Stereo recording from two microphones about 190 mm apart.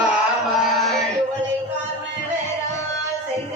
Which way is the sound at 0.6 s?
Centre (ahead or behind).